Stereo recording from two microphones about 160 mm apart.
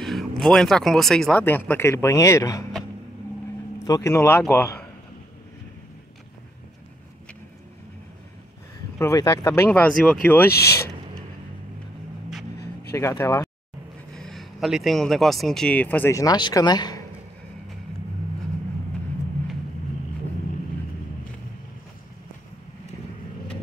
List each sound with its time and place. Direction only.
0.0 s speech: centre (ahead or behind); by 2.6 s 20° left (ahead or behind)
3.8 s speech: 20° left (ahead or behind)
8.9 s speech: 20° left (ahead or behind)
13.2 s speech: 20° left (ahead or behind)
14.1 s speech: centre (ahead or behind); by 17.0 s 25° left (ahead or behind)